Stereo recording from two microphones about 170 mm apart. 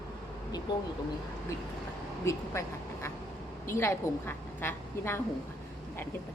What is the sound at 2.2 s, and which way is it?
A woman's voice, 15° left (ahead or behind).